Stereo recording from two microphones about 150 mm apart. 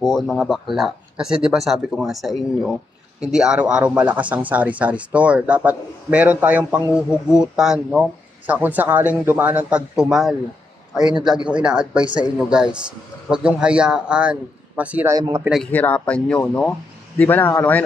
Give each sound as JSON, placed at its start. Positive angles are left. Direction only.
{"t": 0.0, "sound": "speech", "side_deg": 0}
{"t": 15.0, "sound": "speech", "side_deg": -20}
{"t": 15.5, "sound": "speech", "side_deg": 5}